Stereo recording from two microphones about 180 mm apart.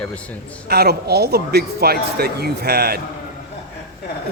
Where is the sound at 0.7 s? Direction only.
60° right (ahead or behind).